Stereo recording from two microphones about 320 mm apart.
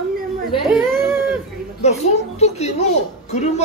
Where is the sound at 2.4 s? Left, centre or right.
Centre.